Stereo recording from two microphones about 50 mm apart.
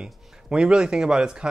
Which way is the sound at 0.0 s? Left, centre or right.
Centre.